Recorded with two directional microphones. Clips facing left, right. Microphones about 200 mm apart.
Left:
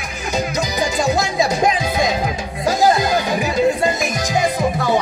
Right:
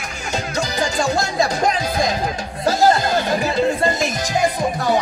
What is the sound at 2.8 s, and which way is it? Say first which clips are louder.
Music: left 1 dB; 15° left (ahead or behind).